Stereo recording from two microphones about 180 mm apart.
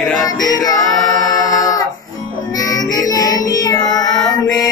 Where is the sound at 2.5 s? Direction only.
20° left (ahead or behind).